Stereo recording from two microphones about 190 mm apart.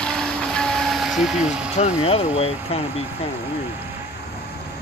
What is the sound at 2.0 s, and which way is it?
Speech, 30° left (ahead or behind).